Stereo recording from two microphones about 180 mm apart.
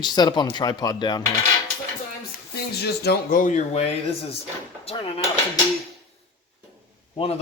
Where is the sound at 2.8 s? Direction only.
55° left (ahead or behind); by 4.1 s 35° left (ahead or behind).